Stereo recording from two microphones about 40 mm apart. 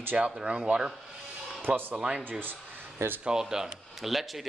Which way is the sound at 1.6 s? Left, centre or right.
Right.